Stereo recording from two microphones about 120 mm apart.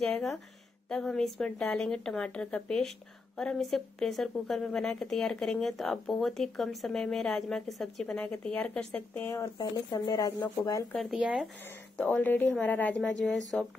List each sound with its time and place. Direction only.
0.0 s speech: 5° left (ahead or behind); by 9.5 s 20° left (ahead or behind)
9.6 s speech: 35° left (ahead or behind)
10.9 s speech: 5° left (ahead or behind)
11.6 s speech: 15° left (ahead or behind)